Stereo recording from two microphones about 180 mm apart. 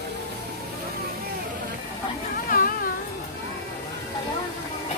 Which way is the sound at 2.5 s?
50° left (ahead or behind).